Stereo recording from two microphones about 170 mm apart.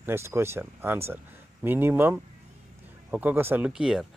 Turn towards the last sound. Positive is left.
turn(degrees=-5)  # may be behind; listen again after turning